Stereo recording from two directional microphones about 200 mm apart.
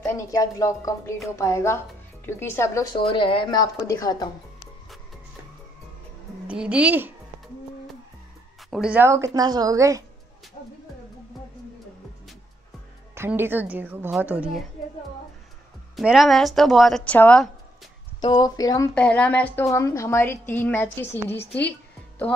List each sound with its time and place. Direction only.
0.0 s a woman's voice: 15° left (ahead or behind)
6.4 s a woman's voice: 5° right (ahead or behind)
8.6 s a woman's voice: centre (ahead or behind)
13.1 s a woman's voice: 10° right (ahead or behind)
16.0 s a woman's voice: centre (ahead or behind)
18.2 s speech: 20° left (ahead or behind)
18.9 s a woman's voice: 5° left (ahead or behind)